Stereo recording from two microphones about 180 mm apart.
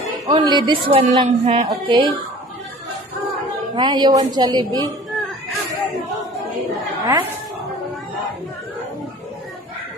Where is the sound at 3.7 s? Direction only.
25° right (ahead or behind).